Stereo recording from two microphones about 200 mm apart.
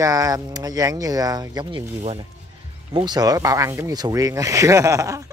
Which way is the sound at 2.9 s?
20° right (ahead or behind).